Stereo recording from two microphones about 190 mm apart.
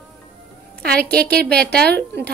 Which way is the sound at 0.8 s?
55° right (ahead or behind).